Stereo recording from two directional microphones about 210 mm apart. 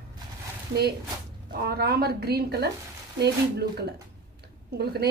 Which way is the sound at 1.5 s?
50° right (ahead or behind).